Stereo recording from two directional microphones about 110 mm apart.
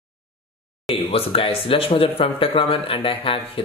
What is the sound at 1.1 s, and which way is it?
Speech, 60° left (ahead or behind).